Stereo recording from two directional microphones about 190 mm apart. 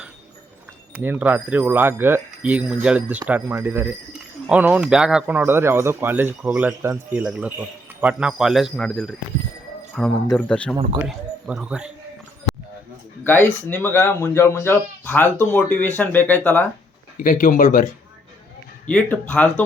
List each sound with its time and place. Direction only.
0.9 s speech: 10° right (ahead or behind)
11.4 s speech: 5° right (ahead or behind)
13.2 s speech: 10° left (ahead or behind)
17.2 s speech: 45° left (ahead or behind)
18.9 s speech: 5° left (ahead or behind)